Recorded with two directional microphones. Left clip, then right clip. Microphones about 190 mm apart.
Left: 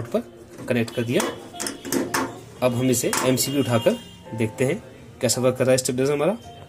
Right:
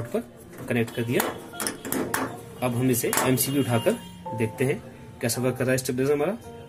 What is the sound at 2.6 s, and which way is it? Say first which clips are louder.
Speech: left 4 dB; 15° left (ahead or behind).